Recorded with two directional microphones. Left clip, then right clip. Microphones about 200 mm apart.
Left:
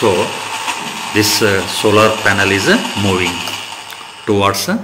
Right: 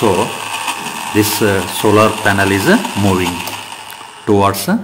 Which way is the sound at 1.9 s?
40° right (ahead or behind).